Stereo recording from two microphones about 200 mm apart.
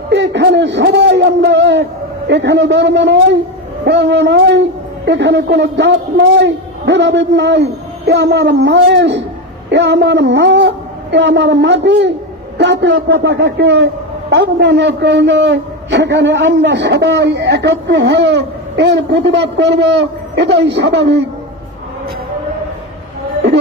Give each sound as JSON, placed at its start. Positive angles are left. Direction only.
{"t": 0.1, "sound": "a man's voice", "side_deg": -65}